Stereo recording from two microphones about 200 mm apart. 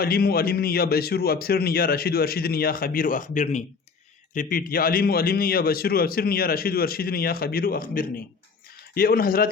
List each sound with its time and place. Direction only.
0.0 s a man's voice: 50° left (ahead or behind)